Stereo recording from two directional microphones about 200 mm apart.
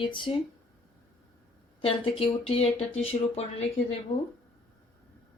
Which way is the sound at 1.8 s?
25° left (ahead or behind).